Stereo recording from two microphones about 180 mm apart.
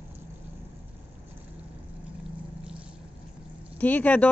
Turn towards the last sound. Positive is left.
turn(degrees=10)  # may be behind; listen again after turning